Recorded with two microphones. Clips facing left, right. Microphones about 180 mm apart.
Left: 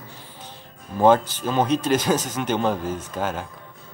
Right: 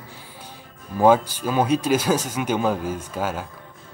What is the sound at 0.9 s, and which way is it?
Speech, 10° right (ahead or behind).